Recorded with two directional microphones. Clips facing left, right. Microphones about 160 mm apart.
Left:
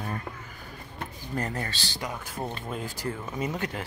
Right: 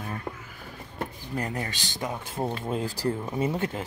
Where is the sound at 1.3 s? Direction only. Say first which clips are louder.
Left 1 dB; 15° right (ahead or behind).